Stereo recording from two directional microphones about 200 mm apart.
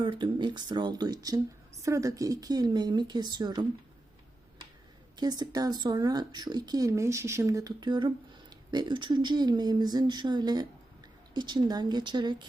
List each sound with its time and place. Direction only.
0.0 s speech: 25° right (ahead or behind)
5.1 s speech: 20° right (ahead or behind)